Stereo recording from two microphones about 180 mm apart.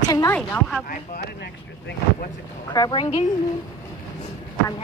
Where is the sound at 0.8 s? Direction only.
55° left (ahead or behind).